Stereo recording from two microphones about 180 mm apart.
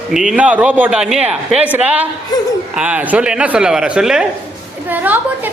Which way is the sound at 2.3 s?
25° left (ahead or behind).